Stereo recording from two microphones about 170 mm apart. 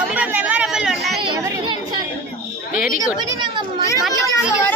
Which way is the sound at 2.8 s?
55° left (ahead or behind).